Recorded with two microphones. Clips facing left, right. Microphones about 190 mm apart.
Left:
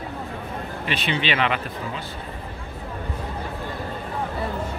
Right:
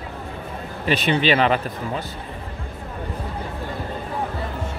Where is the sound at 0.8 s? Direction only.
40° right (ahead or behind).